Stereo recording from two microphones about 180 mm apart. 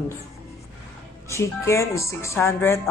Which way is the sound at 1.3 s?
15° left (ahead or behind).